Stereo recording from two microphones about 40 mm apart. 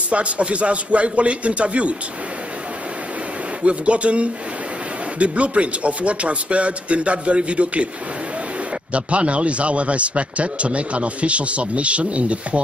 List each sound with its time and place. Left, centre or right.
0.1 s a man's voice: right
3.6 s a man's voice: right
8.9 s a man's voice: right